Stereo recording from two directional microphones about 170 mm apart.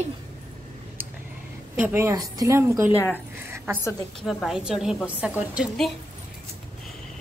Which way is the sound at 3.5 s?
10° right (ahead or behind).